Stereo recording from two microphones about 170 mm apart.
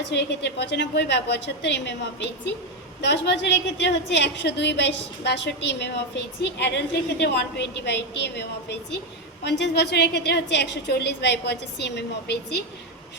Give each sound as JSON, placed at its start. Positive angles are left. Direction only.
{"t": 0.1, "sound": "a woman's voice", "side_deg": 85}